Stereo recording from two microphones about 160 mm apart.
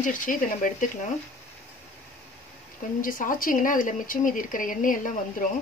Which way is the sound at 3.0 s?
60° left (ahead or behind).